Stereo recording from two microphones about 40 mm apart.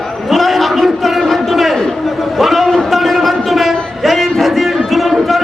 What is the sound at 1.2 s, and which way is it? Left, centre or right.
Crowd, centre.